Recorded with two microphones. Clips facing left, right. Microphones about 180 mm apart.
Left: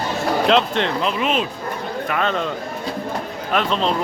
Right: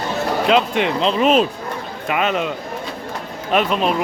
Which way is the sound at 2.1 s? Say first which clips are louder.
Right 3 dB; 15° right (ahead or behind).